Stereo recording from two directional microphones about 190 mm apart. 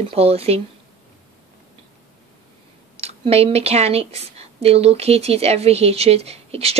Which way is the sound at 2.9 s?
30° right (ahead or behind).